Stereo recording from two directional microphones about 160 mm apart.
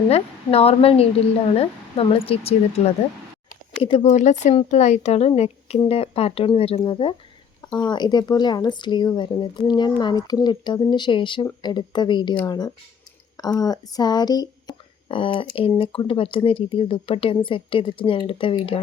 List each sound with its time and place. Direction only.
0.1 s speech: 40° left (ahead or behind)
4.1 s speech: 50° left (ahead or behind)